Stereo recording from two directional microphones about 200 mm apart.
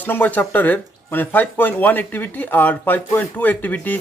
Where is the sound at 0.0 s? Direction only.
10° left (ahead or behind).